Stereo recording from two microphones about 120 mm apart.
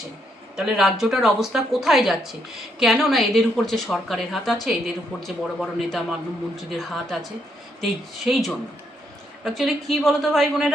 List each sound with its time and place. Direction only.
0.5 s a woman's voice: centre (ahead or behind)